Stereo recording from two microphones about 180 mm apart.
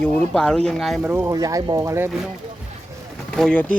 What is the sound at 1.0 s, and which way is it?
Speech, 10° right (ahead or behind).